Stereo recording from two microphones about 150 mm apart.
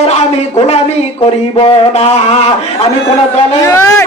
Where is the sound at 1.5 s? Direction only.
35° left (ahead or behind).